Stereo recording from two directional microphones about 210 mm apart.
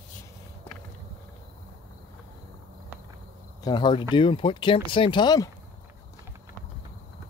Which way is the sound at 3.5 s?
20° left (ahead or behind).